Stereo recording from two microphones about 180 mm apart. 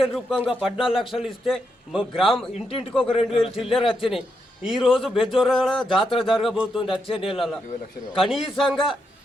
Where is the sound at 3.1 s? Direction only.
30° left (ahead or behind).